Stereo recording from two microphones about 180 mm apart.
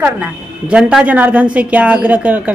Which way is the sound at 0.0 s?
5° right (ahead or behind).